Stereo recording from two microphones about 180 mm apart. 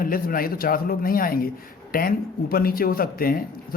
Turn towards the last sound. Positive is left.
turn(degrees=55)  # may be behind; listen again after turning